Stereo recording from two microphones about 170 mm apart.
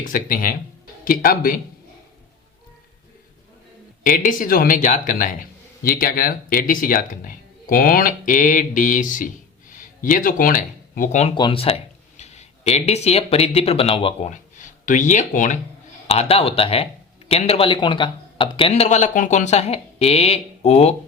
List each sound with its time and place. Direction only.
0.0 s speech: 55° left (ahead or behind)
4.0 s speech: 50° left (ahead or behind)
11.3 s speech: 30° left (ahead or behind); by 15.5 s 45° left (ahead or behind)
16.0 s speech: 35° left (ahead or behind)